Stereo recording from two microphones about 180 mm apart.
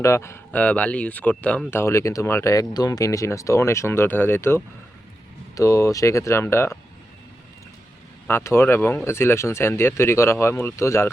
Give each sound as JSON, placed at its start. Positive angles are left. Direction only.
{"t": 0.0, "sound": "speech", "side_deg": 15}
{"t": 8.3, "sound": "speech", "side_deg": 15}